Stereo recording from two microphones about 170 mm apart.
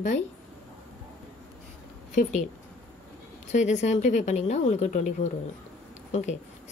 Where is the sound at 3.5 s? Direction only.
45° left (ahead or behind).